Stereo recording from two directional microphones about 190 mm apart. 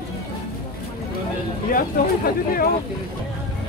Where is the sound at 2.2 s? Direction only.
50° left (ahead or behind).